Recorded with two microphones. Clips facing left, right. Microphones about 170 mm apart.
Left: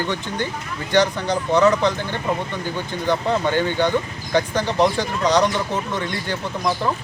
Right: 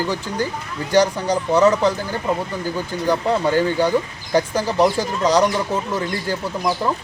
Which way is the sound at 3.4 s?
35° right (ahead or behind).